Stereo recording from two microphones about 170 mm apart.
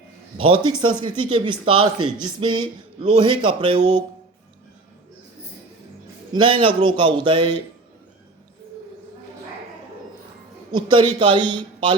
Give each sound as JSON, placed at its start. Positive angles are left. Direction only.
{"t": 0.3, "sound": "speech", "side_deg": -35}
{"t": 6.3, "sound": "speech", "side_deg": -30}
{"t": 10.7, "sound": "speech", "side_deg": -25}